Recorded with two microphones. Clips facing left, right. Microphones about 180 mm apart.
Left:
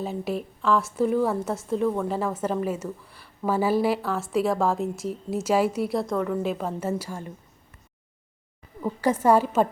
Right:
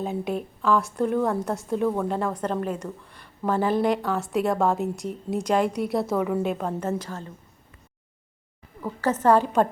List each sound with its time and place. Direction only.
0.0 s speech: centre (ahead or behind)
8.8 s a woman's voice: 15° left (ahead or behind)